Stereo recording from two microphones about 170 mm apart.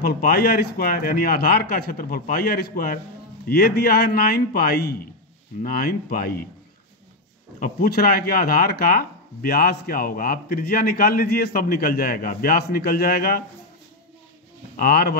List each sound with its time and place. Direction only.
0.0 s speech: 65° left (ahead or behind)
7.6 s speech: 60° left (ahead or behind)
14.8 s speech: 60° left (ahead or behind)